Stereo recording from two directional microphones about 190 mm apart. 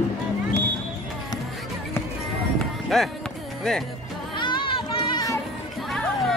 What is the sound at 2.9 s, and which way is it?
Music, centre (ahead or behind).